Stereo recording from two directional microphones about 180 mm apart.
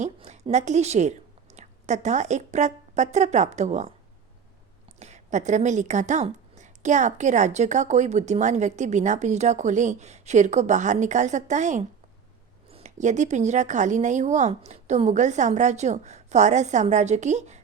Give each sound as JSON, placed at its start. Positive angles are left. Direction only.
{"t": 0.0, "sound": "a woman's voice", "side_deg": -40}
{"t": 4.9, "sound": "a woman's voice", "side_deg": -40}